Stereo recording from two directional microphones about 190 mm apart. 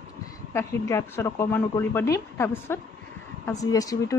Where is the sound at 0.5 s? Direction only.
15° left (ahead or behind).